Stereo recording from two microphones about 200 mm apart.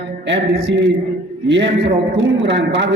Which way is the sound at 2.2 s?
60° right (ahead or behind).